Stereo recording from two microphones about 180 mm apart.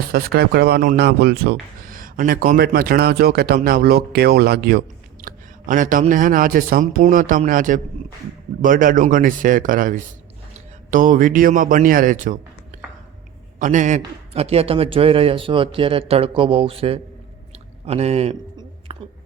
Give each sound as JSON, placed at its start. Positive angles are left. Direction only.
{"t": 0.1, "sound": "speech", "side_deg": -60}
{"t": 5.2, "sound": "a man's voice", "side_deg": -45}
{"t": 13.6, "sound": "a man's voice", "side_deg": -45}
{"t": 18.9, "sound": "a sound", "side_deg": -30}